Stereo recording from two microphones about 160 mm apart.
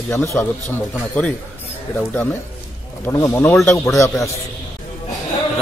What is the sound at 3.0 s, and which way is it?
A man's voice, 15° left (ahead or behind).